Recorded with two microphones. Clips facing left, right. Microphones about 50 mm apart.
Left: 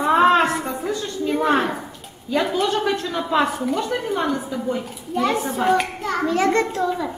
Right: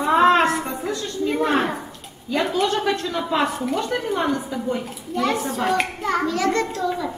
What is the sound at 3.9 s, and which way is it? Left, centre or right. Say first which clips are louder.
A woman's voice: even; centre.